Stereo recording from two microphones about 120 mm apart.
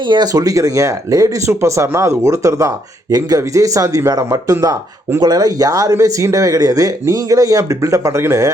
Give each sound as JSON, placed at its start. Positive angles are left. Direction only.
{"t": 0.1, "sound": "speech", "side_deg": -35}